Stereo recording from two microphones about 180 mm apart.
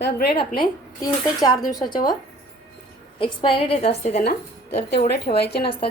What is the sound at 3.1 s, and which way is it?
A woman's voice, 30° left (ahead or behind).